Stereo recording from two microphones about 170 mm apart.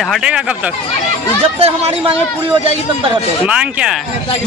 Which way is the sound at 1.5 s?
35° right (ahead or behind).